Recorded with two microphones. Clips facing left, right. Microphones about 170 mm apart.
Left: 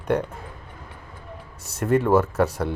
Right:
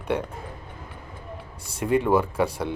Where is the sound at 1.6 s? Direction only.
10° right (ahead or behind).